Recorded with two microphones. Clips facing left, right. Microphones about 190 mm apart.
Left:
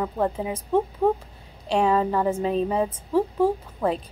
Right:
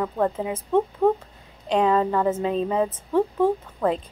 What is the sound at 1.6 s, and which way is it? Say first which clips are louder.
A woman's voice: right 1 dB; 10° left (ahead or behind).